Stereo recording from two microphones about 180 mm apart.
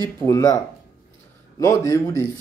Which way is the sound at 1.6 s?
15° left (ahead or behind).